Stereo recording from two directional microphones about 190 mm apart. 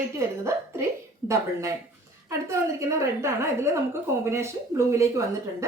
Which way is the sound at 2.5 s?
15° right (ahead or behind).